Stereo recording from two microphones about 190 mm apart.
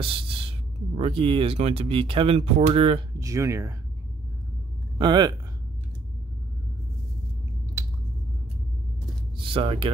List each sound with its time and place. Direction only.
0.0 s speech: 30° right (ahead or behind)
3.2 s speech: 15° right (ahead or behind)
4.9 s speech: 25° right (ahead or behind)
9.4 s speech: 30° right (ahead or behind)